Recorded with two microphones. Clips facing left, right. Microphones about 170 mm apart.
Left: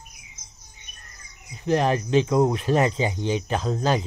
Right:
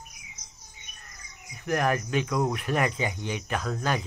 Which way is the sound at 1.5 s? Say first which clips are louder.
Left 4 dB; 25° left (ahead or behind).